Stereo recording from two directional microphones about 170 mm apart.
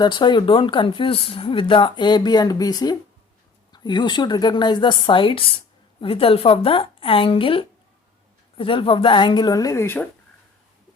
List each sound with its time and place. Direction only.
0.0 s speech: 25° left (ahead or behind)